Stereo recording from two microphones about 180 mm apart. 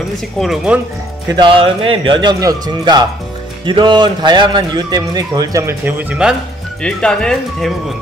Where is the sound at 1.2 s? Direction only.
25° right (ahead or behind); by 6.3 s 5° right (ahead or behind).